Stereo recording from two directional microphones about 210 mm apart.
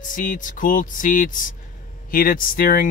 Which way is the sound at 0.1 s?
40° left (ahead or behind).